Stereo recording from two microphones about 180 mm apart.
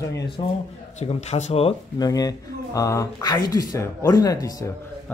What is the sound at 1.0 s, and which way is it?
Speech, 35° left (ahead or behind).